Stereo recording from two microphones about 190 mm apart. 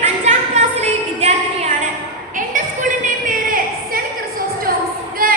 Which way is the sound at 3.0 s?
45° right (ahead or behind).